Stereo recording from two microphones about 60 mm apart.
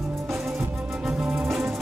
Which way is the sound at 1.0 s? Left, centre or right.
Centre.